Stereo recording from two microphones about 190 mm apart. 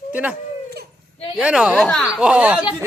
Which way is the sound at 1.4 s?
5° right (ahead or behind).